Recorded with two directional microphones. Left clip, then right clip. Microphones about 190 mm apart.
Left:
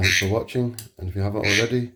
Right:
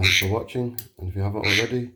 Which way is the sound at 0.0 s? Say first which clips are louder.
Even; 40° left (ahead or behind).